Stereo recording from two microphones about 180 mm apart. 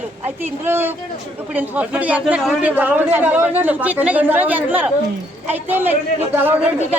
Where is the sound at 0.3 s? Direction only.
10° right (ahead or behind).